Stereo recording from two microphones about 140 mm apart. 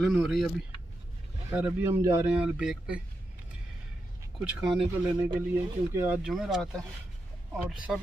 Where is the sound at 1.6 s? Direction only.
15° right (ahead or behind).